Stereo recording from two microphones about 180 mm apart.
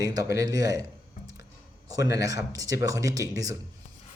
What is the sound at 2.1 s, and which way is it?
Speech, 20° right (ahead or behind).